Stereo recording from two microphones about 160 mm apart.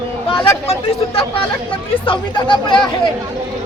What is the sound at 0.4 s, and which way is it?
Speech, 35° left (ahead or behind).